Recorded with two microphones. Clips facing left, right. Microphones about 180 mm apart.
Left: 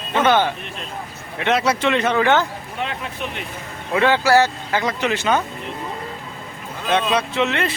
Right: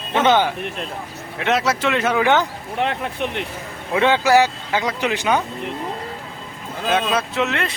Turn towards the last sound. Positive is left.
turn(degrees=0)  # may be behind; listen again after turning